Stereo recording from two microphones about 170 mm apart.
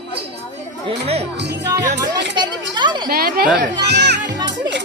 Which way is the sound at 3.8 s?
85° right.